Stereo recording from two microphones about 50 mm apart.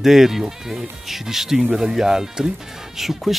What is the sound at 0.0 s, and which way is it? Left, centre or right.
Speech, centre.